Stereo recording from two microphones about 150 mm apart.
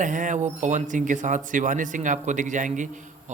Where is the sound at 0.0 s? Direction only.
55° right (ahead or behind).